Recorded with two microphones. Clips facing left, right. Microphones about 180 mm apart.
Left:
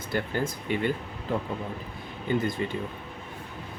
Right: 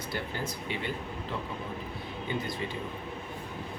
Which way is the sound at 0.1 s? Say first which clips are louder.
Left 8 dB; 50° left (ahead or behind).